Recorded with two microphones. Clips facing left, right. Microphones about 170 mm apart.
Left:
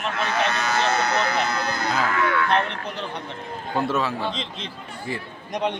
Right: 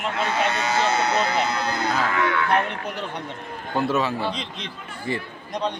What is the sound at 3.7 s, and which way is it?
A man's voice, centre (ahead or behind).